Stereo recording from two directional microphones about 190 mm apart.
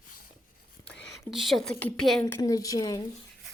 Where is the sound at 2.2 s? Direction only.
15° left (ahead or behind).